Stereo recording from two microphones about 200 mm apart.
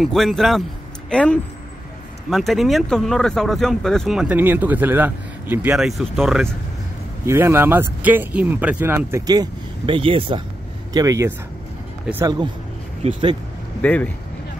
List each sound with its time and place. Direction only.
0.0 s speech: centre (ahead or behind)
7.2 s speech: 10° right (ahead or behind)
13.0 s speech: 25° right (ahead or behind)
13.7 s speech: 5° left (ahead or behind)